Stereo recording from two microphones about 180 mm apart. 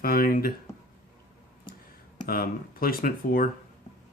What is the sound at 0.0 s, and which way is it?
Speech, 55° left (ahead or behind).